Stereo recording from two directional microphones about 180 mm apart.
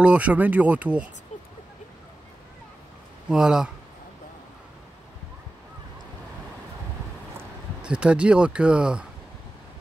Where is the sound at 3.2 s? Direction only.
5° right (ahead or behind).